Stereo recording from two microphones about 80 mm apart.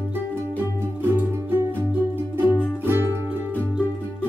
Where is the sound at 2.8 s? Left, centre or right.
Right.